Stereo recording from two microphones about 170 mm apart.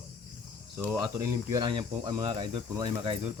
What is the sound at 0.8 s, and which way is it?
Speech, 10° right (ahead or behind).